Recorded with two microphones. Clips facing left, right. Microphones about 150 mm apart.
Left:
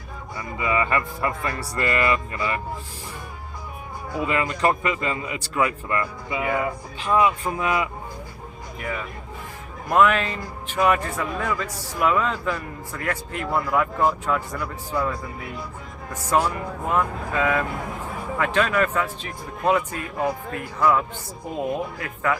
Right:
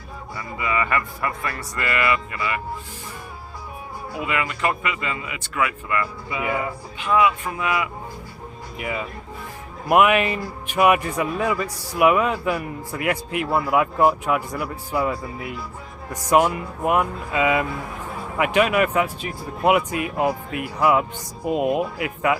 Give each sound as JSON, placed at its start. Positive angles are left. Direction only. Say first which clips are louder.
{"t": 0.3, "sound": "a man's voice", "louder": "left 1 dB", "side_deg": 25}
{"t": 4.3, "sound": "a man's voice", "louder": "left 2 dB", "side_deg": 35}
{"t": 8.8, "sound": "speech", "louder": "right 2 dB", "side_deg": -10}
{"t": 16.8, "sound": "speech", "louder": "right 3 dB", "side_deg": -15}